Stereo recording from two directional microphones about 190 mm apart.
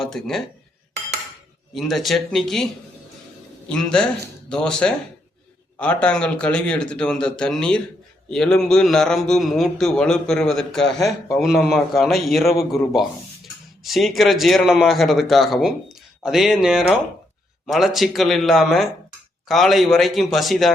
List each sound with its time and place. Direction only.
0.0 s speech: centre (ahead or behind)
1.7 s a man's voice: centre (ahead or behind)
3.7 s a man's voice: 5° left (ahead or behind)